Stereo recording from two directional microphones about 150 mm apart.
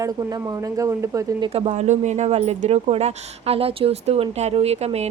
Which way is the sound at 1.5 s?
45° right (ahead or behind).